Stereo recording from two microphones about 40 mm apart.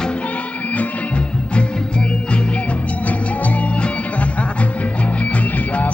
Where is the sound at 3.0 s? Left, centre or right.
Left.